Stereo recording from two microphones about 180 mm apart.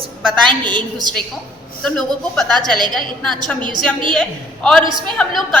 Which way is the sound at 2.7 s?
25° right (ahead or behind).